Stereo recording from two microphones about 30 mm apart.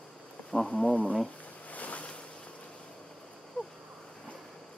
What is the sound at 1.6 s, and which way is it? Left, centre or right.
Boat, left.